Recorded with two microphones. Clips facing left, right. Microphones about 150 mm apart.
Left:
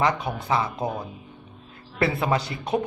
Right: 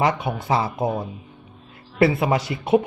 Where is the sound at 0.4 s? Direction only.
25° right (ahead or behind).